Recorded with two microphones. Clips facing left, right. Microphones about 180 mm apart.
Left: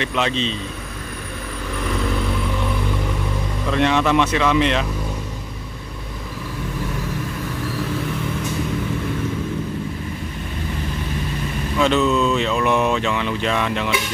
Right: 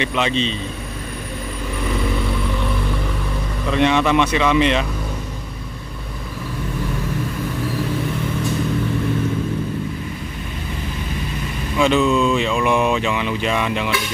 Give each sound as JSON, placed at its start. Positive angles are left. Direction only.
{"t": 0.0, "sound": "speech", "side_deg": 0}
{"t": 3.6, "sound": "speech", "side_deg": 0}
{"t": 11.8, "sound": "speech", "side_deg": -10}